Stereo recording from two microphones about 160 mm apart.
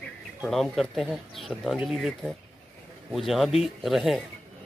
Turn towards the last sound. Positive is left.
turn(degrees=0)  # may be behind; listen again after turning